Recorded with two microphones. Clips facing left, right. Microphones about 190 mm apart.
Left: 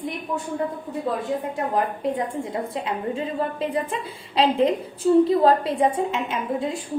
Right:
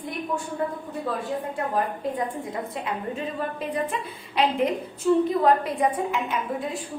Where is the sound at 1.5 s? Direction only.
25° left (ahead or behind).